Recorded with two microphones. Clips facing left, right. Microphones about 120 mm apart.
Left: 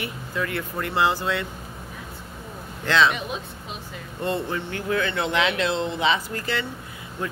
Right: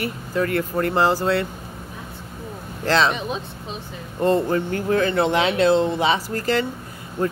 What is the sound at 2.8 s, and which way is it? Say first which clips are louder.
Mantra: right 1 dB; 35° right (ahead or behind).